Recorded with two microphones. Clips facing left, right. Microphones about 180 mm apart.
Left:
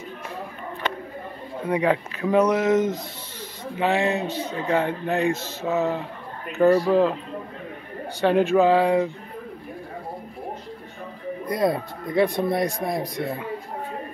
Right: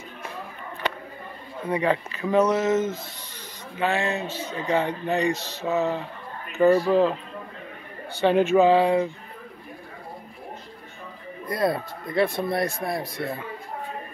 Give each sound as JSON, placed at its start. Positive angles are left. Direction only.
{"t": 1.7, "sound": "speech", "side_deg": 10}
{"t": 4.6, "sound": "speech", "side_deg": 5}
{"t": 8.3, "sound": "speech", "side_deg": 5}
{"t": 11.4, "sound": "speech", "side_deg": 20}